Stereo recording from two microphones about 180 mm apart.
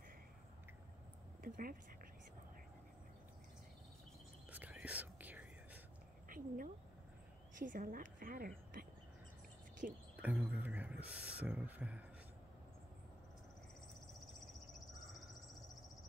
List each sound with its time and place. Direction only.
1.4 s speech: 50° right (ahead or behind)
4.5 s whispering: 10° right (ahead or behind)
6.2 s a sound: 50° right (ahead or behind)
7.5 s speech: 45° right (ahead or behind)
9.8 s speech: 50° right (ahead or behind)
10.2 s speech: 10° right (ahead or behind)